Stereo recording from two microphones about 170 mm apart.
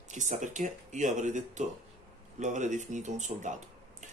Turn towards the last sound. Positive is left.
turn(degrees=-45)  # may be behind; listen again after turning